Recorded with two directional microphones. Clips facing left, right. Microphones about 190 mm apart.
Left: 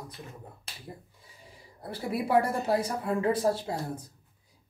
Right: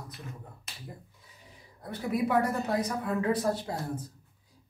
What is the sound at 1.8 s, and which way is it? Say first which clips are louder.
A woman's voice: right 2 dB; 30° left (ahead or behind).